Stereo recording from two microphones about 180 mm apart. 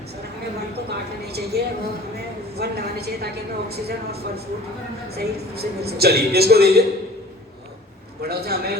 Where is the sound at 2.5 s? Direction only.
60° right (ahead or behind).